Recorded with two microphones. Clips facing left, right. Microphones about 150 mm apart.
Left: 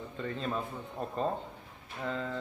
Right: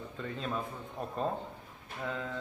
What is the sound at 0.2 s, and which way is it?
Speech, centre (ahead or behind).